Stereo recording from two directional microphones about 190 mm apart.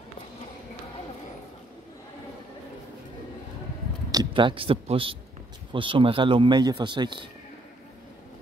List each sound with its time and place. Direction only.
4.1 s speech: 25° right (ahead or behind)